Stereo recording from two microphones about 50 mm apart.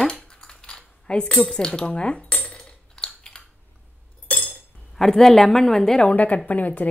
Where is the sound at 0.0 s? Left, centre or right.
Centre.